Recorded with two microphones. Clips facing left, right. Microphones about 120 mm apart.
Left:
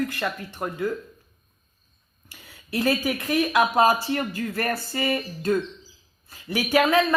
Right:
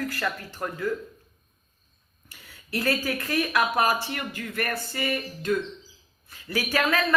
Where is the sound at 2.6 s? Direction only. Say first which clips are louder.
Left 3 dB; 20° left (ahead or behind).